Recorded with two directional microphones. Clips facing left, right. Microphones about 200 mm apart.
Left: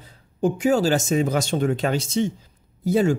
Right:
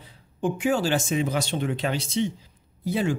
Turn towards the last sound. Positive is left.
turn(degrees=45)  # may be behind; listen again after turning